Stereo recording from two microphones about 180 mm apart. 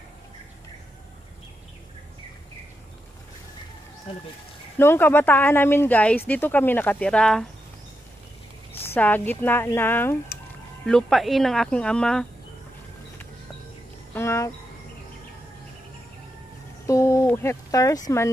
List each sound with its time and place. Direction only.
4.1 s speech: 30° left (ahead or behind)
4.7 s speech: 10° left (ahead or behind)
8.8 s speech: 10° left (ahead or behind)
14.1 s speech: 15° left (ahead or behind)
16.8 s speech: 15° left (ahead or behind)